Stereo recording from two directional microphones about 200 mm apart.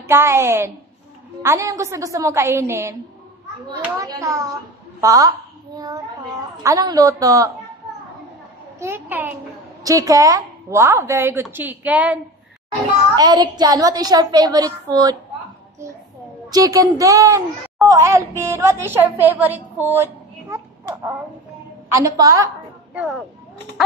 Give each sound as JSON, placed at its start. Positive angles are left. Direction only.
{"t": 0.1, "sound": "a woman's voice", "side_deg": -10}
{"t": 6.6, "sound": "a woman's voice", "side_deg": -15}
{"t": 8.7, "sound": "a woman's voice", "side_deg": -10}
{"t": 13.1, "sound": "a woman's voice", "side_deg": -20}
{"t": 16.4, "sound": "a woman's voice", "side_deg": -20}
{"t": 22.9, "sound": "speech", "side_deg": 0}